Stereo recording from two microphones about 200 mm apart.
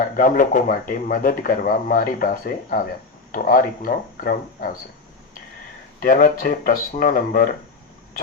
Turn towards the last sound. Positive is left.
turn(degrees=45)  # may be behind; listen again after turning